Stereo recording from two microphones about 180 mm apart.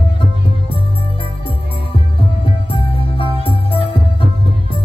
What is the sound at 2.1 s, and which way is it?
Music, 30° left (ahead or behind).